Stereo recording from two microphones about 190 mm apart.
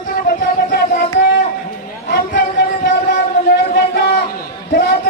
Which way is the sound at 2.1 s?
45° left (ahead or behind).